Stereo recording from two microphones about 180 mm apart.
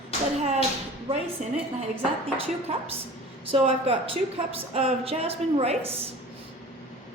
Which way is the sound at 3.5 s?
30° right (ahead or behind).